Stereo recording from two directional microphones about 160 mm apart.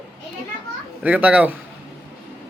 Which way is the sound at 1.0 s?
10° right (ahead or behind).